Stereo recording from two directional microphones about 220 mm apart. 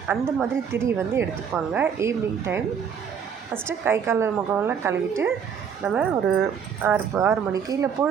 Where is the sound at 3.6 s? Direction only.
10° right (ahead or behind).